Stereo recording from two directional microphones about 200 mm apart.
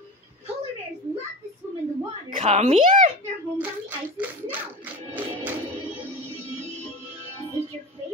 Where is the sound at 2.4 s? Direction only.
35° right (ahead or behind).